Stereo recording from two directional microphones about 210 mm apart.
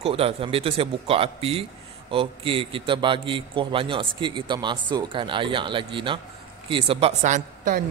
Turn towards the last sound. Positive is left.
turn(degrees=-40)  # may be behind; listen again after turning